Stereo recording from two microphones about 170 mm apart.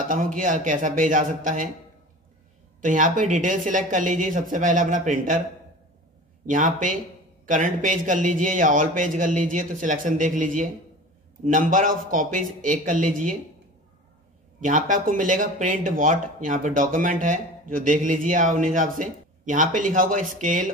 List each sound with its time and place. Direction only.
0.1 s speech: 50° right (ahead or behind)
2.8 s speech: 50° right (ahead or behind)
6.4 s speech: 50° right (ahead or behind)
14.6 s speech: 50° right (ahead or behind)